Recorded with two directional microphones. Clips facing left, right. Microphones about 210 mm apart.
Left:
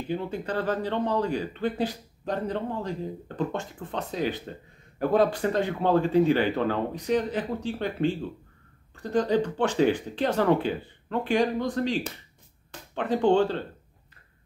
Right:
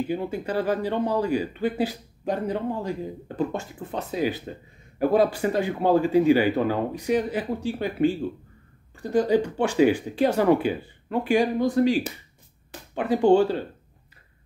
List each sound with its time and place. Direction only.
0.1 s speech: 10° right (ahead or behind)